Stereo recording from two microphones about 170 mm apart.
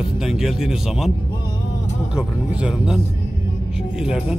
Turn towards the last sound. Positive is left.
turn(degrees=-5)  # may be behind; listen again after turning